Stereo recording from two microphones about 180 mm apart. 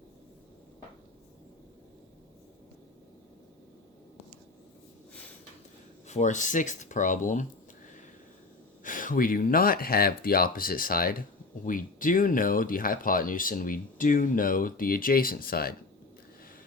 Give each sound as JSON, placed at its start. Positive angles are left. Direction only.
{"t": 6.1, "sound": "speech", "side_deg": 40}
{"t": 8.8, "sound": "speech", "side_deg": 50}